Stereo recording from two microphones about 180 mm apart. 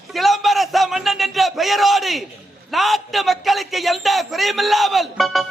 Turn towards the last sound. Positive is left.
turn(degrees=0)  # may be behind; listen again after turning